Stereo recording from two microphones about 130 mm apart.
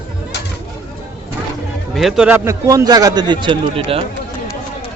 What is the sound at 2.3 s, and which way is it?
Speech, 20° right (ahead or behind).